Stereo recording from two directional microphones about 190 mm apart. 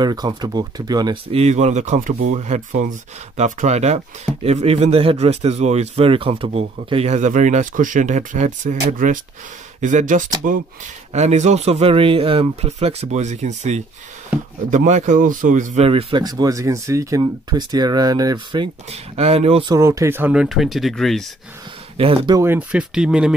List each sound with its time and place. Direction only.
0.0 s speech: 20° right (ahead or behind)
1.3 s speech: 35° right (ahead or behind)
19.7 s speech: 15° right (ahead or behind); by 21.3 s centre (ahead or behind)
21.9 s speech: 25° right (ahead or behind)
22.4 s speech: 10° right (ahead or behind)